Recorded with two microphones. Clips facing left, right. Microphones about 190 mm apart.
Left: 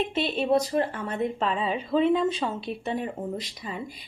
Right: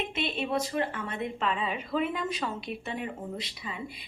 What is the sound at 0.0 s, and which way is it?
Speech, 35° left (ahead or behind).